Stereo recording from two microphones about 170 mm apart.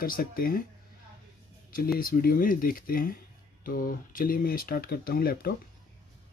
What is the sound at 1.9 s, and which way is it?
Speech, 55° left (ahead or behind).